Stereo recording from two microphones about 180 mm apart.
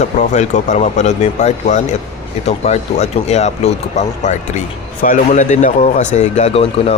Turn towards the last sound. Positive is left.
turn(degrees=35)  # may be behind; listen again after turning